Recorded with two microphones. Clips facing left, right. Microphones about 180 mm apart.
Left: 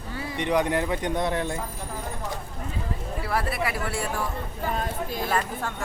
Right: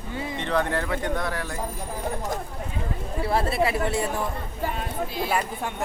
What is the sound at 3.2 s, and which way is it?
Speech, 25° right (ahead or behind).